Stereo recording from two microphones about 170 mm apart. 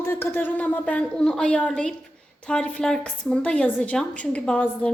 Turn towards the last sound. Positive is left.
turn(degrees=5)  # may be behind; listen again after turning